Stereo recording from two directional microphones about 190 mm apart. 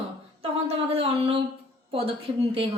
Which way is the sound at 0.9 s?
30° right (ahead or behind).